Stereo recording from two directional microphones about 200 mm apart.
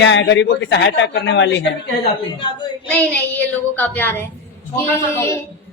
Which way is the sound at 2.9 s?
10° left (ahead or behind).